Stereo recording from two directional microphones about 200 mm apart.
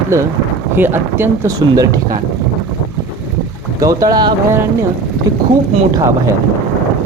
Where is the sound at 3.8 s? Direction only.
15° right (ahead or behind).